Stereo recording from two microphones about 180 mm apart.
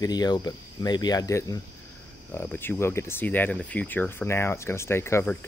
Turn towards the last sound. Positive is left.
turn(degrees=15)  # may be behind; listen again after turning